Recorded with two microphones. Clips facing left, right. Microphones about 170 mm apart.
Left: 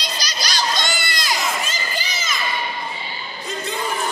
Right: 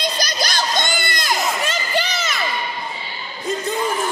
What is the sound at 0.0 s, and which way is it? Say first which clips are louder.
Crowd: right 6 dB; 55° right (ahead or behind).